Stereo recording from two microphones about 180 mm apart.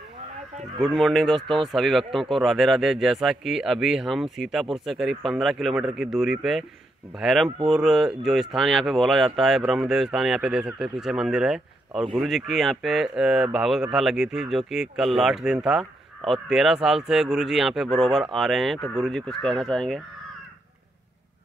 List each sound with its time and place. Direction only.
0.7 s speech: centre (ahead or behind)